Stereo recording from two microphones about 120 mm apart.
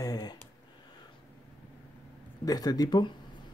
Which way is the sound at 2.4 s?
30° left (ahead or behind).